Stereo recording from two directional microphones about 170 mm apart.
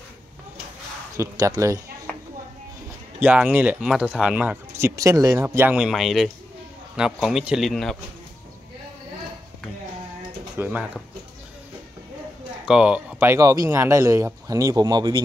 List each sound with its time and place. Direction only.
1.1 s speech: 20° right (ahead or behind)
3.2 s speech: 10° right (ahead or behind)
10.6 s speech: 10° right (ahead or behind)
12.6 s speech: 5° right (ahead or behind); by 15.2 s 25° right (ahead or behind)